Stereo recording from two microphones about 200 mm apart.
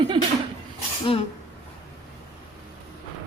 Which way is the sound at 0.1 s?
25° right (ahead or behind).